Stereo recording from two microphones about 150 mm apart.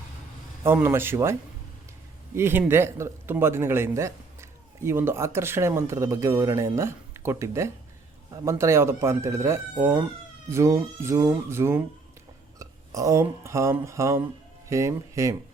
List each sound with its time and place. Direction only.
0.6 s a man's voice: 15° right (ahead or behind)